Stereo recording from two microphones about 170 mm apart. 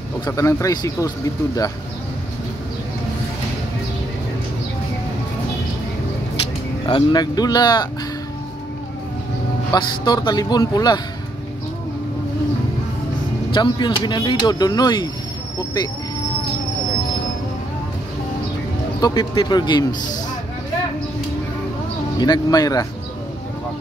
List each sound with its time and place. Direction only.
0.3 s speech: 20° left (ahead or behind)
6.9 s speech: 25° left (ahead or behind)
9.7 s speech: 25° left (ahead or behind)
13.5 s speech: 25° left (ahead or behind)
18.9 s speech: 25° left (ahead or behind)
22.2 s speech: 25° left (ahead or behind)